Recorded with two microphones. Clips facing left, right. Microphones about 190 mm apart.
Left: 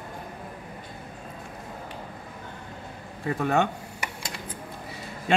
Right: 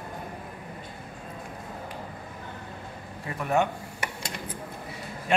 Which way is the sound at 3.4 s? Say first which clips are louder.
Left 1 dB; 80° left.